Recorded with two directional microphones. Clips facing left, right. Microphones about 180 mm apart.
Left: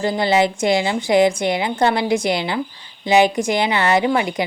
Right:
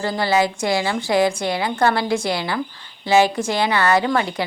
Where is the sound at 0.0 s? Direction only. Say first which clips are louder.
Left 2 dB; 20° left (ahead or behind).